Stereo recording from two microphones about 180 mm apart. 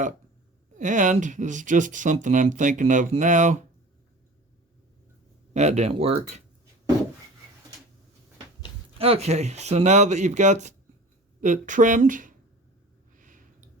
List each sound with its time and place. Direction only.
0.8 s speech: 45° right (ahead or behind)
5.5 s speech: 40° right (ahead or behind)
9.0 s speech: 35° right (ahead or behind)
13.1 s a sound: 50° right (ahead or behind)